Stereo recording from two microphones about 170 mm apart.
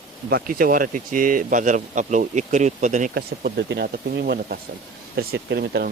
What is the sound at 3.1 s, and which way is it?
Speech, 80° right.